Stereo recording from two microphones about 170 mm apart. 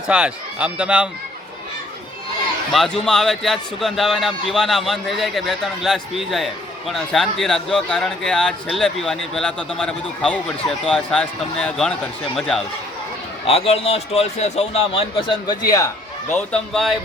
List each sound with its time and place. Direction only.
0.1 s a man's voice: 5° right (ahead or behind)
2.7 s a man's voice: 5° left (ahead or behind)
13.5 s a man's voice: 35° left (ahead or behind)
16.3 s a man's voice: 5° left (ahead or behind)